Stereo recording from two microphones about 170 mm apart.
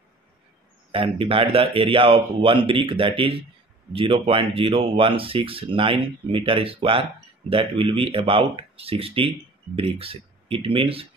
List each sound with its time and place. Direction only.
0.9 s speech: 35° right (ahead or behind)